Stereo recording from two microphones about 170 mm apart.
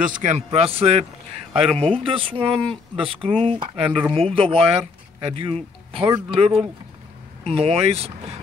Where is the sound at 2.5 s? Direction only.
Centre (ahead or behind).